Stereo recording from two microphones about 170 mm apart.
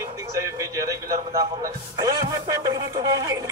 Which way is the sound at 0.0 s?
20° right (ahead or behind).